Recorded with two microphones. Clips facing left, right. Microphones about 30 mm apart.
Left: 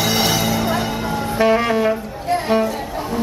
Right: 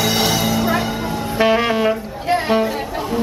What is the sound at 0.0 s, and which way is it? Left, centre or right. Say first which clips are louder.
Music: even; centre.